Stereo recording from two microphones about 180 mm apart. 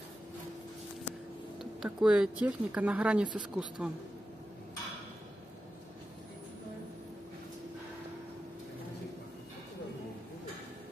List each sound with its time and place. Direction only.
1.6 s speech: centre (ahead or behind)